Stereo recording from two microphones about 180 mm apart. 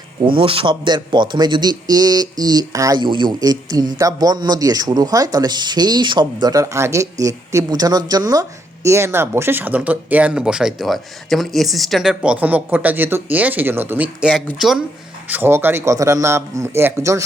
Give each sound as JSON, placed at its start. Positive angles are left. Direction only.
{"t": 0.2, "sound": "speech", "side_deg": -30}